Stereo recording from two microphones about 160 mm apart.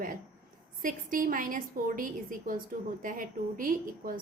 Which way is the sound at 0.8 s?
60° right (ahead or behind).